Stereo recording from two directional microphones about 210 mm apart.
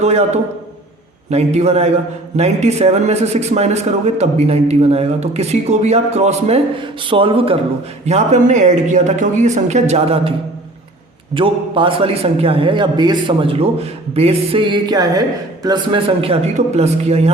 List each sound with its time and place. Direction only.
0.0 s a man's voice: 30° right (ahead or behind)
1.3 s a man's voice: 30° right (ahead or behind)
11.3 s a man's voice: 25° right (ahead or behind)